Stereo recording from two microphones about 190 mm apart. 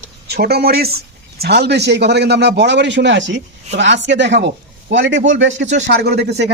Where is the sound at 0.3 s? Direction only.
55° right (ahead or behind); by 5.6 s 75° right (ahead or behind).